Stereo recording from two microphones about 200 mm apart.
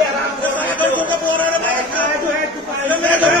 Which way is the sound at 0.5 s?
10° left (ahead or behind).